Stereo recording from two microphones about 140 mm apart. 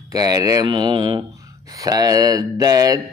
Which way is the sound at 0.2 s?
25° right (ahead or behind).